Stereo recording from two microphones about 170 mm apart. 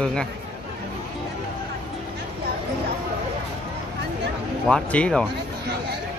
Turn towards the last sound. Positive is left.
turn(degrees=5)  # may be behind; listen again after turning